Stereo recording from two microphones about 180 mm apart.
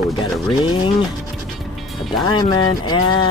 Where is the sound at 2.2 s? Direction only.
25° left (ahead or behind).